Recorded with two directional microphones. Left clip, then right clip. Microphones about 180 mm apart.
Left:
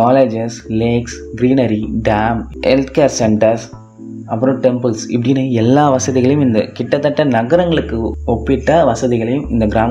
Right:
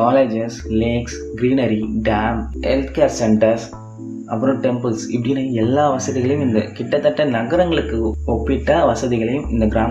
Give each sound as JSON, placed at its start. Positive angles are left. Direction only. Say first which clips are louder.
{"t": 0.0, "sound": "speech", "louder": "left 4 dB", "side_deg": 40}